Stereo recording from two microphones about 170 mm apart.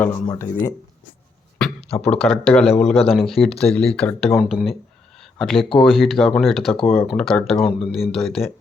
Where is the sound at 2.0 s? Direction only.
5° left (ahead or behind).